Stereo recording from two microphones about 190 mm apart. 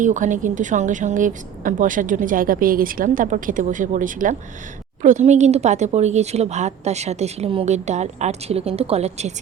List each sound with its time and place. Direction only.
0.0 s a woman's voice: 40° right (ahead or behind)